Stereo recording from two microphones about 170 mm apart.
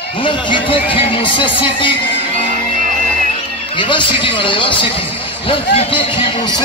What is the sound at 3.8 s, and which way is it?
Speech, 30° left (ahead or behind).